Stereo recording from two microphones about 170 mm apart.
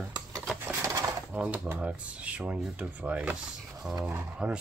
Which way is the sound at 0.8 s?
20° right (ahead or behind).